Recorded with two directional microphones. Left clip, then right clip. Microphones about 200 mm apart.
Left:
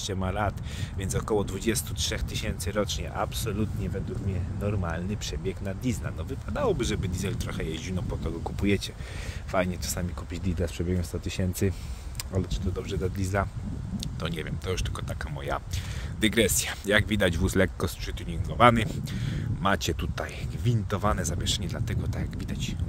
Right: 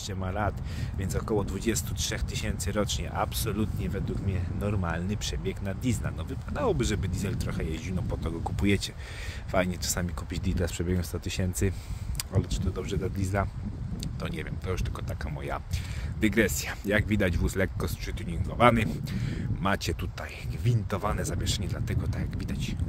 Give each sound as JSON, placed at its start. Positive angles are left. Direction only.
{"t": 0.0, "sound": "speech", "side_deg": 15}
{"t": 16.2, "sound": "speech", "side_deg": 20}